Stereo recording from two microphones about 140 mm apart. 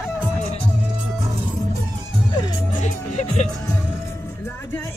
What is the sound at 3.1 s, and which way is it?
Music, 55° left (ahead or behind).